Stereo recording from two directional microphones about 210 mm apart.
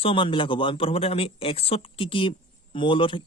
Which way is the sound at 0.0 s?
25° left (ahead or behind).